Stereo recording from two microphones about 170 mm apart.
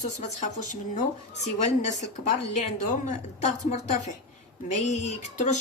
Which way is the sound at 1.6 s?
45° left (ahead or behind).